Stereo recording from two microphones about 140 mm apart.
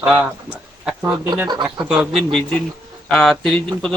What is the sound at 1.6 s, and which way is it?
A man's voice, 5° right (ahead or behind).